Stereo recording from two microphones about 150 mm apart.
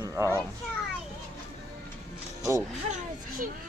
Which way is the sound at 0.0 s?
20° right (ahead or behind).